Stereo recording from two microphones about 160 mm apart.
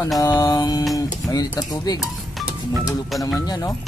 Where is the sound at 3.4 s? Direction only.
25° left (ahead or behind).